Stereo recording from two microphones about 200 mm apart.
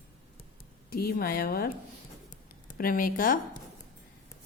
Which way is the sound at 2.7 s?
45° left (ahead or behind).